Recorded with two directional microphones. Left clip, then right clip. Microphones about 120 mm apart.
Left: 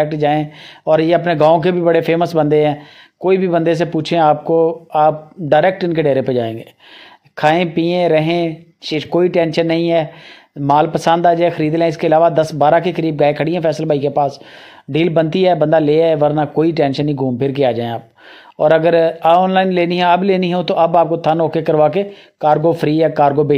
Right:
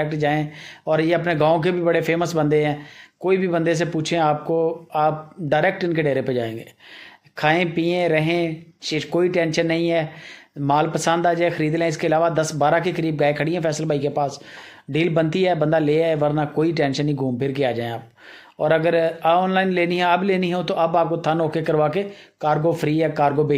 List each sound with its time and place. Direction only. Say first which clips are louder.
0.0 s speech: left 7 dB; 45° left (ahead or behind)